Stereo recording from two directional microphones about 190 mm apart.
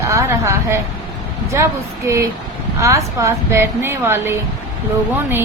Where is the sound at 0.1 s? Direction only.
15° right (ahead or behind).